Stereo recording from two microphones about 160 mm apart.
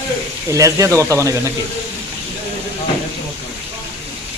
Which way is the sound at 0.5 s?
20° right (ahead or behind).